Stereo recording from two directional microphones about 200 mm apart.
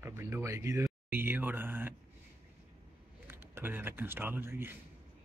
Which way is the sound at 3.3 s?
10° right (ahead or behind).